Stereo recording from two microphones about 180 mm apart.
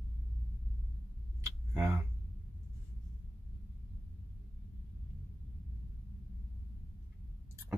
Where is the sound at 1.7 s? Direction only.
15° right (ahead or behind).